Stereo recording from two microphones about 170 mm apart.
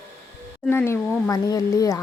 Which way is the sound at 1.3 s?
20° left (ahead or behind).